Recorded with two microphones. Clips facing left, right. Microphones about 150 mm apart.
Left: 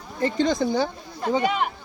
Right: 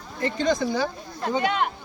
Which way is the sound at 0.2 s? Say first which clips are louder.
Left 2 dB; 25° left (ahead or behind).